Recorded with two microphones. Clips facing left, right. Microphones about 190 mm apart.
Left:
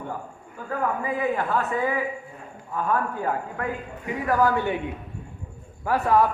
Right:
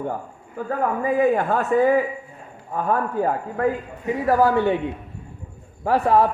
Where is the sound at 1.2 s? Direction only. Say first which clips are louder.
Right 6 dB; 45° right (ahead or behind).